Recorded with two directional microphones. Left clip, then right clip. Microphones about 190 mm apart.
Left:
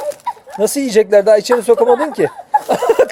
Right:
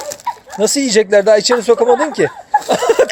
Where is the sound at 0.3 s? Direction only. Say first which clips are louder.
Right 3 dB; centre (ahead or behind).